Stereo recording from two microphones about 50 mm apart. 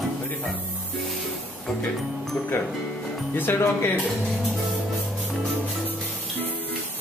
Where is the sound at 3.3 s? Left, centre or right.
Left.